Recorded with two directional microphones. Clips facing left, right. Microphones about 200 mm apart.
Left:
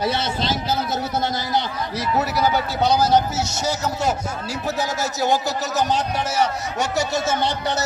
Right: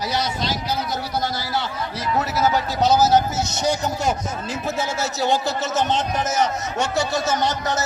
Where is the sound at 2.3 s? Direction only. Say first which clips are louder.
Even; 5° right (ahead or behind).